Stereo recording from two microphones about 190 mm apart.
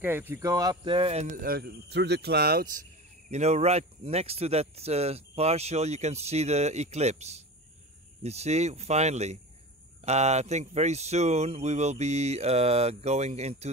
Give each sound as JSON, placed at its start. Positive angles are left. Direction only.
{"t": 0.0, "sound": "speech", "side_deg": -10}
{"t": 3.3, "sound": "speech", "side_deg": -35}